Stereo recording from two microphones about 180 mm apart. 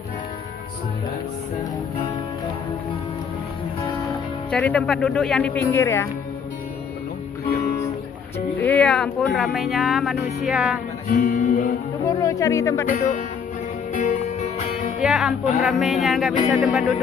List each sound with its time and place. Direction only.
4.5 s speech: 5° left (ahead or behind)
8.5 s speech: 10° left (ahead or behind)
11.1 s speech: 50° left (ahead or behind)
12.0 s speech: 20° left (ahead or behind)
12.8 s speech: 50° left (ahead or behind)
13.9 s music: 40° left (ahead or behind)
15.0 s speech: centre (ahead or behind)